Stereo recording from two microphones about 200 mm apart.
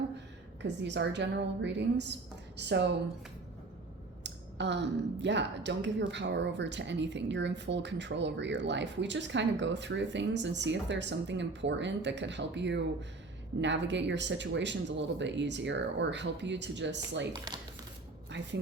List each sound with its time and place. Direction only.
0.6 s speech: 60° right (ahead or behind)
4.2 s speech: 60° right (ahead or behind)
17.5 s speech: 20° right (ahead or behind)
18.3 s speech: 65° right (ahead or behind)